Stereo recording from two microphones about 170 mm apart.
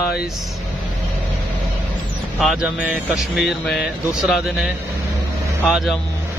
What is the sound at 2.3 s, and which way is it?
Speech, centre (ahead or behind).